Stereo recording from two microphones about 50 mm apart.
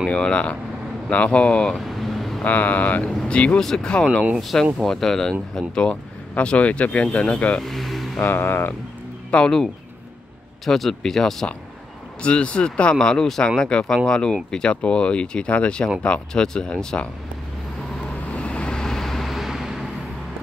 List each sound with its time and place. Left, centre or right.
0.1 s speech: left
1.9 s vehicle: centre
2.4 s speech: left
3.5 s speech: centre
4.4 s speech: centre
5.8 s speech: left
7.5 s speech: centre
8.3 s speech: left
9.3 s speech: centre
10.6 s speech: centre
12.2 s speech: left
18.3 s vehicle: left
18.9 s vehicle: centre